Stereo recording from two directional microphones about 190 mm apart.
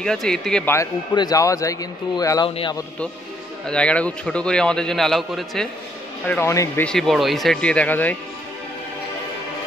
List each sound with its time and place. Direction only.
0.0 s a man's voice: 5° left (ahead or behind)
0.7 s speech: 20° left (ahead or behind)
3.6 s a man's voice: 5° left (ahead or behind)
6.2 s speech: 10° left (ahead or behind)
6.9 s a man's voice: centre (ahead or behind)